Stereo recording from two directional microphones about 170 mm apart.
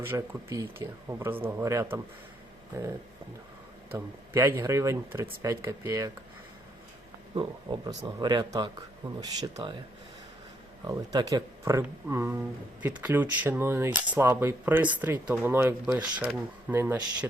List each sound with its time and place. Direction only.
0.1 s speech: 15° right (ahead or behind)
3.9 s speech: 15° right (ahead or behind)
7.3 s speech: 25° right (ahead or behind)
10.8 s speech: 20° right (ahead or behind)